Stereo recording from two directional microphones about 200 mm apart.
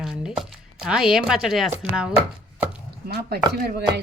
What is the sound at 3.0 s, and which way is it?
Chopping, 50° right (ahead or behind).